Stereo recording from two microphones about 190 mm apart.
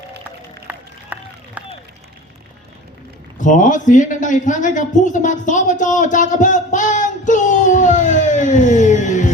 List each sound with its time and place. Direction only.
0.7 s run: 10° right (ahead or behind)
3.4 s speech: 40° left (ahead or behind)